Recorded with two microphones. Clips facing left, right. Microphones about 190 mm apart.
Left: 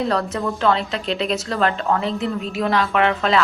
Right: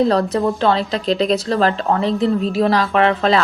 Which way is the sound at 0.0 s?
35° right (ahead or behind).